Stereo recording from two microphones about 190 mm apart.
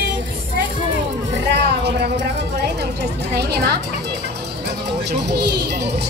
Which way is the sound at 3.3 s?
60° right (ahead or behind).